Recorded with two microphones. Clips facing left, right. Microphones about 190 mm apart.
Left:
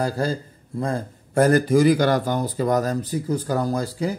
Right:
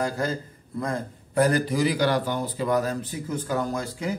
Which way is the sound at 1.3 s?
45° left (ahead or behind).